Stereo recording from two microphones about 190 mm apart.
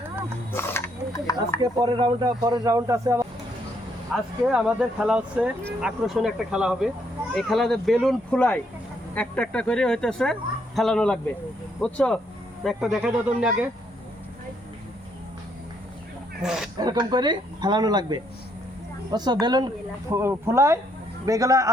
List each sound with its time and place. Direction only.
0.5 s speech: 10° left (ahead or behind)
1.8 s speech: 25° right (ahead or behind)
4.1 s speech: 5° right (ahead or behind)
16.4 s speech: 5° right (ahead or behind)
16.7 s a man's voice: 20° right (ahead or behind)